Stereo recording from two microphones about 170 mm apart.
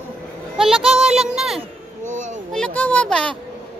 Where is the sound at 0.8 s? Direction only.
40° right (ahead or behind).